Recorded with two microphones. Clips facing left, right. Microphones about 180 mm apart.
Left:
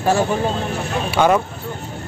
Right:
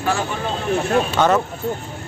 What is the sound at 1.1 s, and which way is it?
Speech, 10° left (ahead or behind).